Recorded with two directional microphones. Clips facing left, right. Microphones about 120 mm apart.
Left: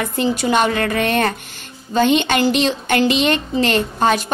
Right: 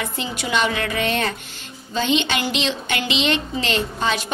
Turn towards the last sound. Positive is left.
turn(degrees=50)  # may be behind; listen again after turning